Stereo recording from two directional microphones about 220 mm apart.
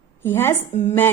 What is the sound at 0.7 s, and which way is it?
Speech, 30° left (ahead or behind).